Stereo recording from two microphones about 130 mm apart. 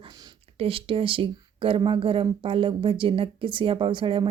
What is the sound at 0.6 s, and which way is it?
Speech, 45° right (ahead or behind).